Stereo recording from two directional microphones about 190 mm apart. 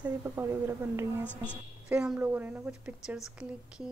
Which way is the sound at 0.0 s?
15° right (ahead or behind).